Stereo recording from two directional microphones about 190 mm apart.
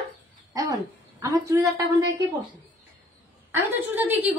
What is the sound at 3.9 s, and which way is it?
Speech, 10° right (ahead or behind).